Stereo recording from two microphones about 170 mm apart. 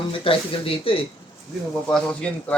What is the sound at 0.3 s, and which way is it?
Speech, 35° left (ahead or behind).